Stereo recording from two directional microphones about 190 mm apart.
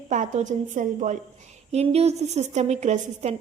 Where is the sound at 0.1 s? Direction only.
40° right (ahead or behind).